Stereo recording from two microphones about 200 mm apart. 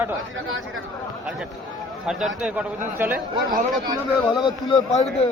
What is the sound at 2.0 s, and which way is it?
A man's voice, centre (ahead or behind).